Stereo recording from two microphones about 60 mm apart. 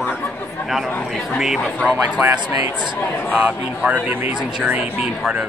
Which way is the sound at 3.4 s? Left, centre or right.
Right.